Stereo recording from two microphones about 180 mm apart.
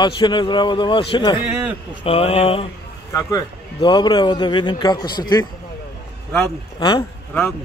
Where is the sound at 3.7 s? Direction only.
25° left (ahead or behind).